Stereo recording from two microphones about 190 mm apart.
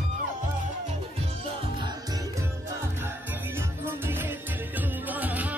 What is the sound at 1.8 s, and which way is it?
Music, 20° right (ahead or behind).